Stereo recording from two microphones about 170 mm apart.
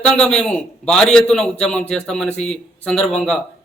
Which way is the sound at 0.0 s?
5° left (ahead or behind).